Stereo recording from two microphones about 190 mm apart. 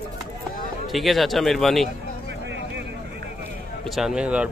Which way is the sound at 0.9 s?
Centre (ahead or behind).